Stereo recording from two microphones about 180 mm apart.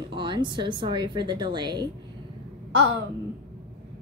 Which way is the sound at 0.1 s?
25° right (ahead or behind).